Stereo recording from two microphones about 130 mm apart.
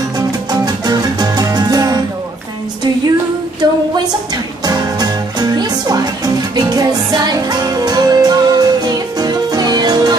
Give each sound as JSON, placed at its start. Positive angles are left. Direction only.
{"t": 0.5, "sound": "music", "side_deg": -30}
{"t": 3.6, "sound": "a sound", "side_deg": -35}
{"t": 4.6, "sound": "music", "side_deg": -30}